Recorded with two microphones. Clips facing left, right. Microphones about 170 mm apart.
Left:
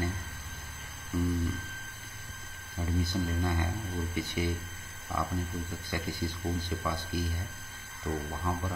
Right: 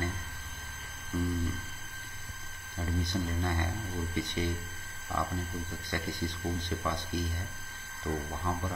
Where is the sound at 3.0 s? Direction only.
5° left (ahead or behind).